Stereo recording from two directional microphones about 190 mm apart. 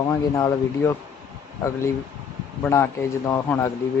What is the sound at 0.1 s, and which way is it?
Speech, 15° left (ahead or behind).